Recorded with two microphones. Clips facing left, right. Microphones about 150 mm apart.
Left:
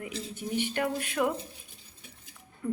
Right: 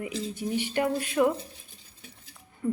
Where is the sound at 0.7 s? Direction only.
5° right (ahead or behind).